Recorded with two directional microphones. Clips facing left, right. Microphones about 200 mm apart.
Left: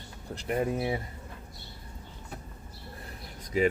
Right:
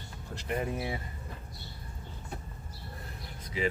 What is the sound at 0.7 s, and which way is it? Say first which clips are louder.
Speech: left 5 dB; 25° left (ahead or behind).